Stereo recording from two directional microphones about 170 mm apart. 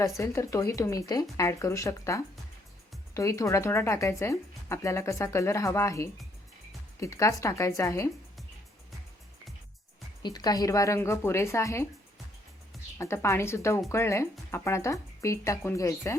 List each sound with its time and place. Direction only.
0.2 s speech: 15° left (ahead or behind)
10.2 s speech: 25° left (ahead or behind)
13.0 s speech: 15° left (ahead or behind)